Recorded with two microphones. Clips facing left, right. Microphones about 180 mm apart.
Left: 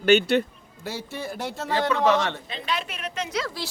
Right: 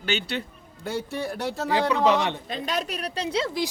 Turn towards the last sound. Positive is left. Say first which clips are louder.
# right 3 dB
turn(degrees=-30)  # may be behind; listen again after turning